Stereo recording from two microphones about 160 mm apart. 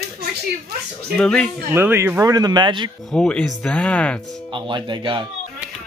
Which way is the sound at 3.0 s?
5° left (ahead or behind).